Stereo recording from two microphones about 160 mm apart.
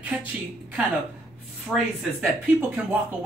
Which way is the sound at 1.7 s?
Centre (ahead or behind).